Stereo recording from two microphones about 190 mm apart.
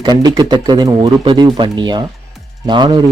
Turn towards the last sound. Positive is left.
turn(degrees=-25)  # may be behind; listen again after turning